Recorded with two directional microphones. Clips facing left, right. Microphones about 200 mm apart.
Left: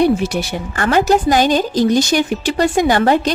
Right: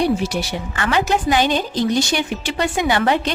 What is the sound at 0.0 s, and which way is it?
A woman's voice, 50° left (ahead or behind).